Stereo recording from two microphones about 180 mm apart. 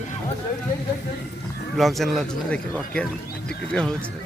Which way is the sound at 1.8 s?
Centre (ahead or behind).